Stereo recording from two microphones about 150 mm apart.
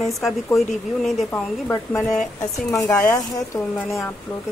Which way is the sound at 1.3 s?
15° left (ahead or behind).